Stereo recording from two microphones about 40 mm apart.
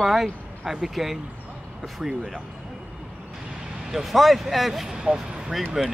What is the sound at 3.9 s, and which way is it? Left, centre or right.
Speech, centre.